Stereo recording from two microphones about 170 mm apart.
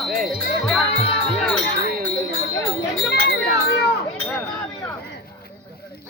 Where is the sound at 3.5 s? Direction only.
70° left (ahead or behind).